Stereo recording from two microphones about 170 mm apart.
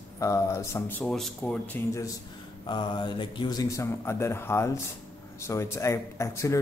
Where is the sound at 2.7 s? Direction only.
25° left (ahead or behind).